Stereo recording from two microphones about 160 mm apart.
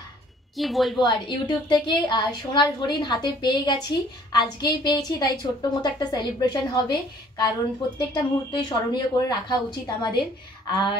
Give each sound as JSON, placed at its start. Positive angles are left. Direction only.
{"t": 0.6, "sound": "a woman's voice", "side_deg": 0}
{"t": 0.9, "sound": "a woman's voice", "side_deg": 30}